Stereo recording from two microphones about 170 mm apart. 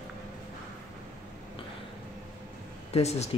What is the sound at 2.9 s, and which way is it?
Speech, 40° left (ahead or behind).